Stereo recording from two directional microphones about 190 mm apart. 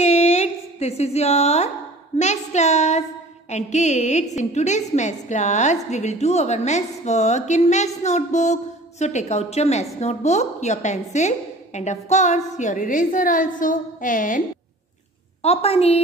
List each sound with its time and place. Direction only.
0.0 s a sound: 35° left (ahead or behind)
2.1 s a woman's voice: 35° left (ahead or behind)
15.4 s a woman's voice: 30° left (ahead or behind)